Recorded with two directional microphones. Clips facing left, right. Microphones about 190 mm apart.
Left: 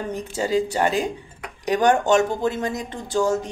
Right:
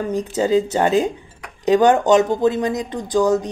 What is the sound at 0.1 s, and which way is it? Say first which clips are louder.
Speech: right 6 dB; 20° right (ahead or behind).